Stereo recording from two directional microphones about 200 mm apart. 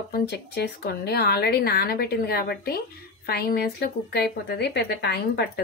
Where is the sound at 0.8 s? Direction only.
55° left (ahead or behind).